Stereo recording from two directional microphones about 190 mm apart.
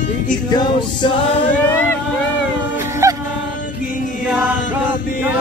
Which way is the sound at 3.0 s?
15° right (ahead or behind).